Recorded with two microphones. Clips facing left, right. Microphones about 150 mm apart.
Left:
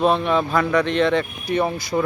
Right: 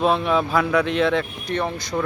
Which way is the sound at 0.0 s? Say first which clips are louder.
Left 1 dB; centre (ahead or behind).